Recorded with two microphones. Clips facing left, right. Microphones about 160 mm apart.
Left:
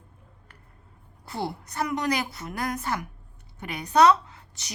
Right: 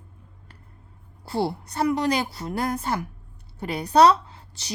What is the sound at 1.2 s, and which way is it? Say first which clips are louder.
A woman's voice: right 6 dB; 30° right (ahead or behind).